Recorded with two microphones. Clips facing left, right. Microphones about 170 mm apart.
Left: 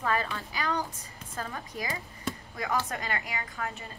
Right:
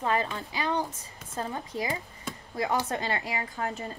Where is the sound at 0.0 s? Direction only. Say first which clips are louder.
Right 2 dB; 20° right (ahead or behind).